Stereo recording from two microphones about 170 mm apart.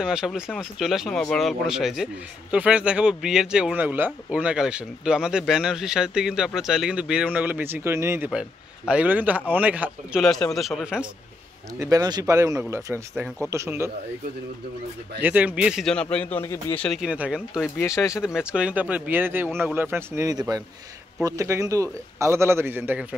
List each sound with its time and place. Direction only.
0.0 s speech: 5° right (ahead or behind)
10.2 s speech: centre (ahead or behind)
11.8 s speech: 20° right (ahead or behind)
15.2 s speech: 10° right (ahead or behind); by 16.7 s 15° left (ahead or behind)
16.8 s speech: centre (ahead or behind)
17.7 s speech: 15° left (ahead or behind)
18.2 s speech: 5° right (ahead or behind)